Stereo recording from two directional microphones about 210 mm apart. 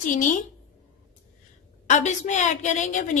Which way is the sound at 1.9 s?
35° left (ahead or behind).